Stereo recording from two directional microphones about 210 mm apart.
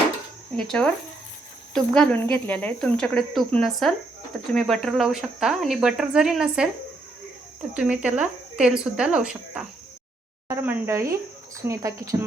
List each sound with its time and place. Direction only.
0.5 s speech: 5° left (ahead or behind)
7.7 s speech: 5° right (ahead or behind)